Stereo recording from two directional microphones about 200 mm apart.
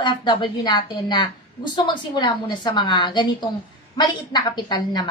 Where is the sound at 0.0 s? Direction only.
25° left (ahead or behind).